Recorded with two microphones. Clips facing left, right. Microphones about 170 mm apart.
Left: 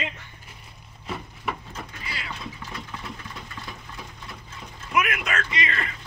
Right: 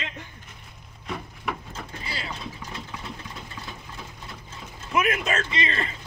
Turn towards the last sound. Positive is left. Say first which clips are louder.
# right 1 dB
turn(degrees=-30)  # may be behind; listen again after turning